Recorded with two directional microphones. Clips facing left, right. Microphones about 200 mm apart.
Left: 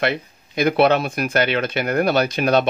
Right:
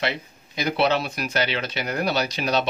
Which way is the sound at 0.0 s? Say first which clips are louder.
Left 5 dB; 55° left (ahead or behind).